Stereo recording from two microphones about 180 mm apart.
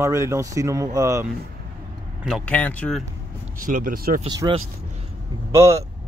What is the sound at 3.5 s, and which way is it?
Speech, 50° right (ahead or behind).